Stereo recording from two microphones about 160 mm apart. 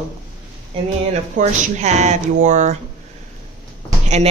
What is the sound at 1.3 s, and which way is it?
Speech, 45° right (ahead or behind).